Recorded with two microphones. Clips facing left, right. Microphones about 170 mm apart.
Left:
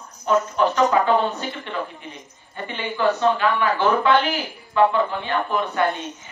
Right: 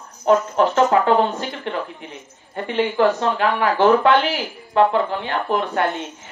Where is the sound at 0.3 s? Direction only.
75° right (ahead or behind).